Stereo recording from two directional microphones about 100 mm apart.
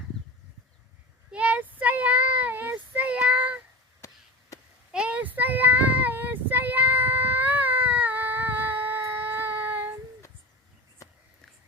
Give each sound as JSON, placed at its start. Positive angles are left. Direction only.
{"t": 1.3, "sound": "child singing", "side_deg": -15}
{"t": 4.0, "sound": "chop", "side_deg": 35}
{"t": 4.9, "sound": "child singing", "side_deg": -10}